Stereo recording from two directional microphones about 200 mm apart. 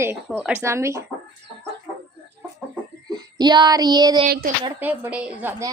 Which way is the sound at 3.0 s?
20° right (ahead or behind).